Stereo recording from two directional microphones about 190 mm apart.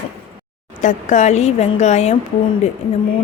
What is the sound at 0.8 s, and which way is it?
Speech, 40° left (ahead or behind).